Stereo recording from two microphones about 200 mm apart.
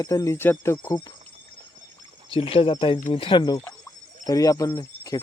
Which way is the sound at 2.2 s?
30° left (ahead or behind).